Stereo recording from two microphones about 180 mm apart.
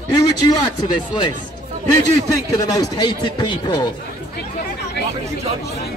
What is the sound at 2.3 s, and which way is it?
A man's voice, 20° left (ahead or behind).